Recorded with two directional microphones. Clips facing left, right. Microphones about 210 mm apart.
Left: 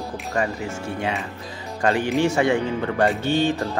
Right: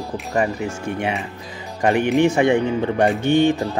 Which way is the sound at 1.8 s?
20° right (ahead or behind).